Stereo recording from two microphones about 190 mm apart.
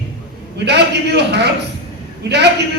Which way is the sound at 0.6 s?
60° right (ahead or behind).